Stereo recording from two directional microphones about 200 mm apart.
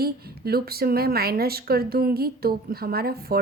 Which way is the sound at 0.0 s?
50° right (ahead or behind).